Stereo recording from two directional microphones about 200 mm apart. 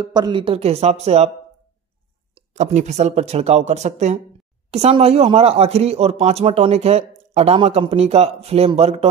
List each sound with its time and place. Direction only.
0.0 s speech: 20° right (ahead or behind)
2.3 s speech: 35° right (ahead or behind)